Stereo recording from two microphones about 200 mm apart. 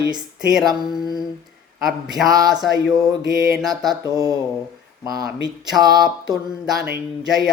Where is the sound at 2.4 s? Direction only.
Centre (ahead or behind).